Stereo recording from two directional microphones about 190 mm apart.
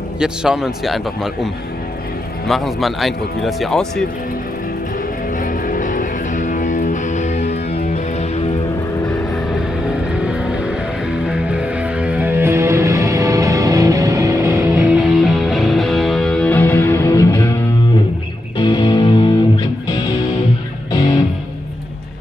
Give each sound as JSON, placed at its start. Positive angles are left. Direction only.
{"t": 0.2, "sound": "speech", "side_deg": -5}
{"t": 5.4, "sound": "music", "side_deg": 45}
{"t": 11.2, "sound": "music", "side_deg": -5}
{"t": 18.6, "sound": "music", "side_deg": 25}